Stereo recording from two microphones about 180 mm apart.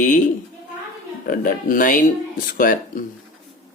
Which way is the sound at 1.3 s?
50° left (ahead or behind).